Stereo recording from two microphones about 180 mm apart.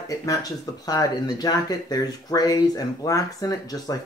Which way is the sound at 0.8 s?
20° left (ahead or behind).